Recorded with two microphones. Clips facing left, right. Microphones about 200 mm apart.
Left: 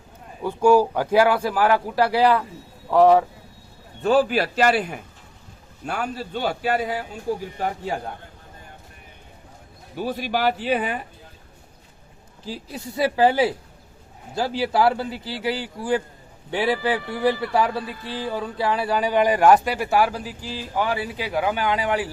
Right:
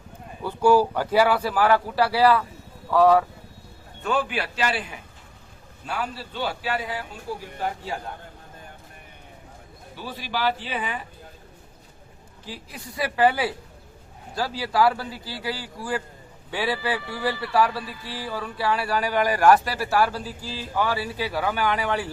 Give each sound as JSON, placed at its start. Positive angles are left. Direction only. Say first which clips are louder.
{"t": 0.4, "sound": "a man's voice", "louder": "left 2 dB", "side_deg": 10}
{"t": 4.0, "sound": "a man's voice", "louder": "left 7 dB", "side_deg": 35}
{"t": 9.9, "sound": "a man's voice", "louder": "left 7 dB", "side_deg": 50}
{"t": 12.5, "sound": "a man's voice", "louder": "left 6 dB", "side_deg": 30}